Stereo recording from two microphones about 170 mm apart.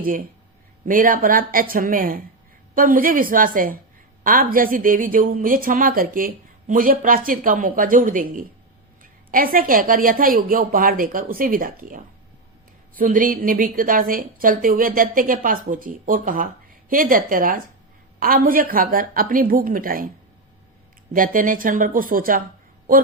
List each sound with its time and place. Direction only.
0.9 s a woman's voice: 55° right (ahead or behind)
21.1 s a woman's voice: 55° right (ahead or behind)